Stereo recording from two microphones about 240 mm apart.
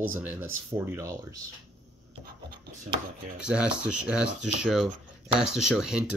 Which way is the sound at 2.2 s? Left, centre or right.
Right.